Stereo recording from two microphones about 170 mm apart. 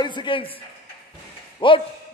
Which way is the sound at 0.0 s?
25° left (ahead or behind).